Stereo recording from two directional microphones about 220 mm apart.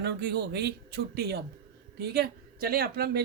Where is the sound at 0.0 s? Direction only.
50° right (ahead or behind).